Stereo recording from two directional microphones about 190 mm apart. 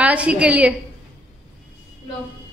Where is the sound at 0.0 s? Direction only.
5° right (ahead or behind).